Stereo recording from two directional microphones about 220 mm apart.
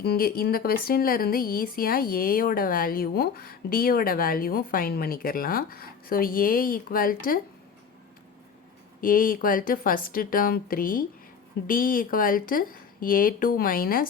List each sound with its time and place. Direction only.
0.0 s speech: 45° left (ahead or behind)
9.0 s speech: 40° left (ahead or behind)